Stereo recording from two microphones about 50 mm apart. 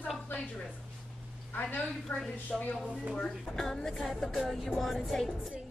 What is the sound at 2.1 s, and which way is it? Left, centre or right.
Speech, left.